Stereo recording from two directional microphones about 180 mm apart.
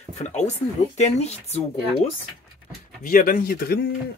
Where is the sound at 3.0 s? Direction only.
50° left (ahead or behind).